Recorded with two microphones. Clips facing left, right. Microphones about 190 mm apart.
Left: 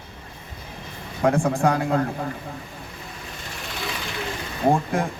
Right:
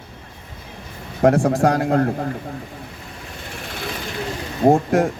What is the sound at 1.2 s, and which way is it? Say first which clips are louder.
Speech: right 5 dB; 45° right (ahead or behind).